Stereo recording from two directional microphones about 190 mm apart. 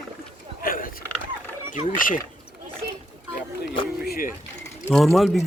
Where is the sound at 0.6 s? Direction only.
45° left (ahead or behind).